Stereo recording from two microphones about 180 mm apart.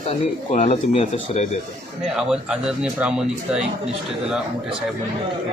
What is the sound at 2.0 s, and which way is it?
Speech, 5° right (ahead or behind).